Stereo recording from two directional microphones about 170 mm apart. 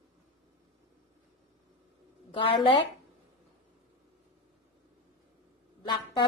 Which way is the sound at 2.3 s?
30° left (ahead or behind).